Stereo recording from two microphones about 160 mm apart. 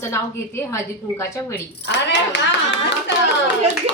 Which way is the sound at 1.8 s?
90° left.